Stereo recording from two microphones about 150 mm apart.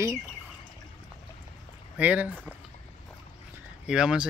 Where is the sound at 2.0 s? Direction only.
10° right (ahead or behind).